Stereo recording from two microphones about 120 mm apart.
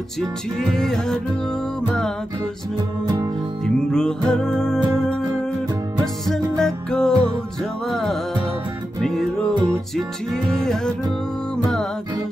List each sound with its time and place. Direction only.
0.2 s music: 5° left (ahead or behind)
3.6 s music: 5° left (ahead or behind)